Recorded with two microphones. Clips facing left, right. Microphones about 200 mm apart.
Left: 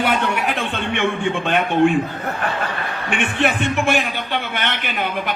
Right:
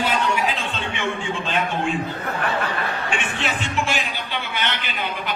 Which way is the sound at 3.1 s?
60° left (ahead or behind).